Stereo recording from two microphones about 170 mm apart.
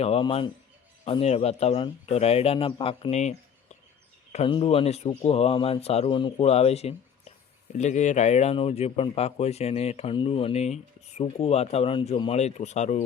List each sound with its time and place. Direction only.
0.0 s speech: 35° left (ahead or behind)